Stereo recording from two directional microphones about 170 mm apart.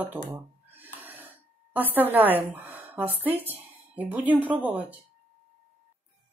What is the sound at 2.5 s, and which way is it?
Speech, 10° right (ahead or behind).